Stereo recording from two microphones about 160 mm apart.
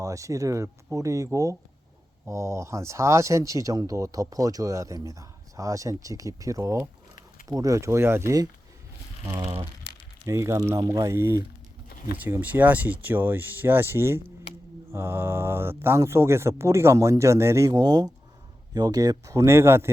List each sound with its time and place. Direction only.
0.0 s speech: 20° right (ahead or behind)
9.3 s speech: 30° right (ahead or behind)
10.2 s speech: 15° right (ahead or behind)